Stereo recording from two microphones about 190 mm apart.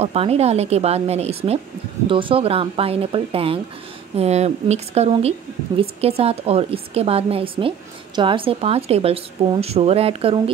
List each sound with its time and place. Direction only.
0.0 s a woman's voice: 35° right (ahead or behind)